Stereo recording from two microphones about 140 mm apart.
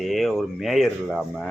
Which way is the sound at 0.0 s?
Centre (ahead or behind).